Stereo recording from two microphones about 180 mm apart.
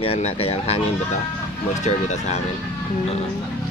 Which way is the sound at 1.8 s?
40° left (ahead or behind).